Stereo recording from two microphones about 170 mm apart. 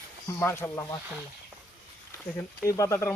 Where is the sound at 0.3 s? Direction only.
15° left (ahead or behind).